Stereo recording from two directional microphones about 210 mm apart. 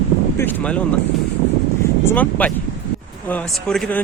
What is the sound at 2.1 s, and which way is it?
Speech, 5° left (ahead or behind).